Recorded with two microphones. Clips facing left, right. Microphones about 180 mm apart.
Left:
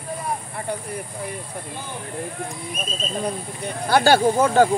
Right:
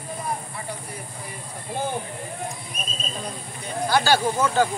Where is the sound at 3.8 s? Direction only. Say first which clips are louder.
Left 4 dB; 55° left (ahead or behind).